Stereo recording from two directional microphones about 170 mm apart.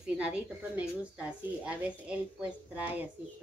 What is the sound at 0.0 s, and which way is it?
A woman's voice, 5° right (ahead or behind).